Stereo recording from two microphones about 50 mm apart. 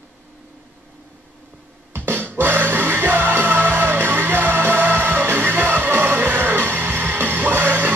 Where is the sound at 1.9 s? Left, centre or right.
Right.